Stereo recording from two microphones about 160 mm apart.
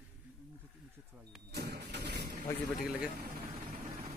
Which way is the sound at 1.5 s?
85° right.